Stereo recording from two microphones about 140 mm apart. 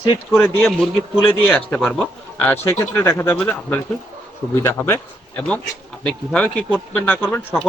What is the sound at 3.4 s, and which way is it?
Speech, 10° left (ahead or behind).